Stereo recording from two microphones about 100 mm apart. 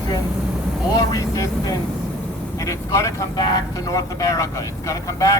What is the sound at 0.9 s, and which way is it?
Speech, 35° left (ahead or behind).